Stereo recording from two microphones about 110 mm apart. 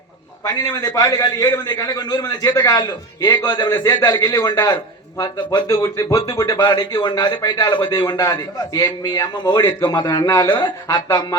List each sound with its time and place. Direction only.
0.4 s speech: 35° left (ahead or behind)
5.6 s speech: 30° left (ahead or behind)